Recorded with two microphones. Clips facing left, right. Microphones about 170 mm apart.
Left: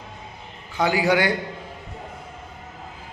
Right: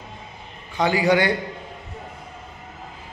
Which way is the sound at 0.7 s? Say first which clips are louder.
Right 1 dB; centre (ahead or behind).